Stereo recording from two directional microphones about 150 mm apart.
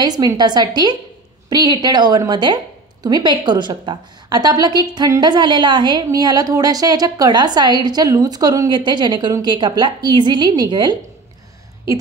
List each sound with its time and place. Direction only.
0.0 s a woman's voice: 25° right (ahead or behind)